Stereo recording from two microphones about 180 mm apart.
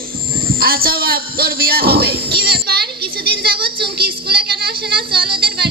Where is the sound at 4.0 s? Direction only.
60° right (ahead or behind).